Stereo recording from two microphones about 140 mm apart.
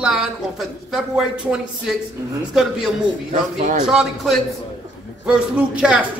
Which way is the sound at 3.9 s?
Centre (ahead or behind).